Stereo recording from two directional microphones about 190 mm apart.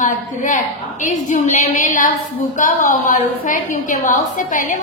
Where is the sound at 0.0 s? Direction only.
40° left (ahead or behind).